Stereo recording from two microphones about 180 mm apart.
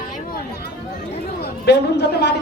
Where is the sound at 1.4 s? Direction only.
65° left (ahead or behind).